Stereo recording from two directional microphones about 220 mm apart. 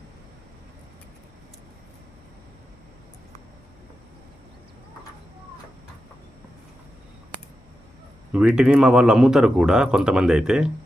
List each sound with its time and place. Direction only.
8.3 s speech: 5° right (ahead or behind)